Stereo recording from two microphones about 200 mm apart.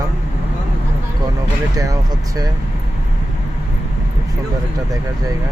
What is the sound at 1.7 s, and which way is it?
Speech, 15° right (ahead or behind).